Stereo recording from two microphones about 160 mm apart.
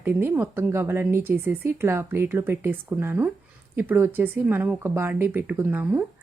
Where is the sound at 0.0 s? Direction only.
15° right (ahead or behind).